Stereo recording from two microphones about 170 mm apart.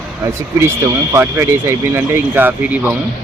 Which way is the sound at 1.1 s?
15° right (ahead or behind).